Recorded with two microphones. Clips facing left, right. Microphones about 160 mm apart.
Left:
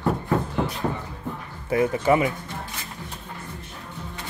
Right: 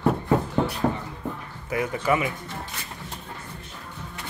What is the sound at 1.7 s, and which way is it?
Speech, 30° left (ahead or behind).